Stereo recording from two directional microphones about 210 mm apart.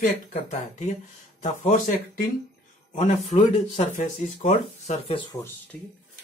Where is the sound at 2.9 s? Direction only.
35° left (ahead or behind).